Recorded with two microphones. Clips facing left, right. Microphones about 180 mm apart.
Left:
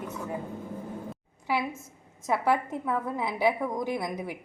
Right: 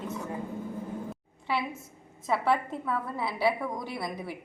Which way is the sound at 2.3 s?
15° left (ahead or behind).